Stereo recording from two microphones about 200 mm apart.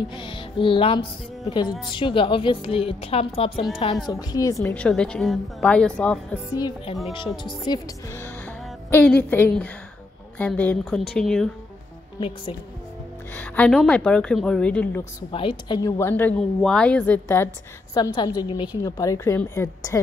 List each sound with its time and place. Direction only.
0.1 s a woman's voice: 25° left (ahead or behind)
4.1 s a woman's voice: 15° left (ahead or behind)
4.6 s speech: 5° left (ahead or behind)
7.1 s a woman's voice: 25° left (ahead or behind); by 11.4 s 5° left (ahead or behind)
13.3 s speech: 5° left (ahead or behind)
15.3 s a woman's voice: 25° left (ahead or behind)
17.9 s a woman's voice: 20° left (ahead or behind)